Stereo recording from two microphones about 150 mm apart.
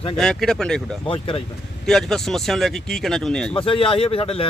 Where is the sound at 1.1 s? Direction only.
35° left (ahead or behind).